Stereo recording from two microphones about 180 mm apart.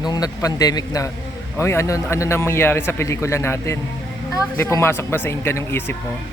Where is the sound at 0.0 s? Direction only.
20° left (ahead or behind).